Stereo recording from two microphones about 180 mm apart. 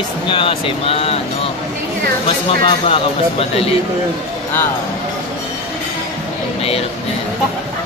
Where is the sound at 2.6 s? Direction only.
30° left (ahead or behind).